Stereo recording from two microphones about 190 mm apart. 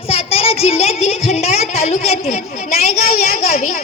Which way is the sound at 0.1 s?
30° left (ahead or behind).